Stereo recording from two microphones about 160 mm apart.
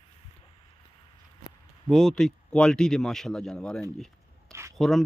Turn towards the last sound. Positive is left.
turn(degrees=0)  # may be behind; listen again after turning